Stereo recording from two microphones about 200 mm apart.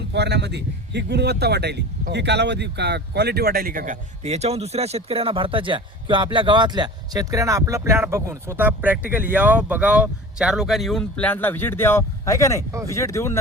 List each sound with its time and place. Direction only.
0.1 s a man's voice: 60° right (ahead or behind); by 13.4 s 15° left (ahead or behind)